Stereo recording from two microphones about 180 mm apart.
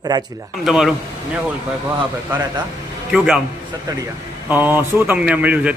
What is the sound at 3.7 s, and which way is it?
A man's voice, 20° right (ahead or behind).